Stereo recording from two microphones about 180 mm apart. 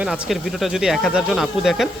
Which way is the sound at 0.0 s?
Centre (ahead or behind).